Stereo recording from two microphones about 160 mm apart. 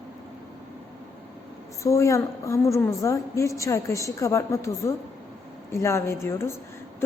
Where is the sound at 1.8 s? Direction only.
20° left (ahead or behind).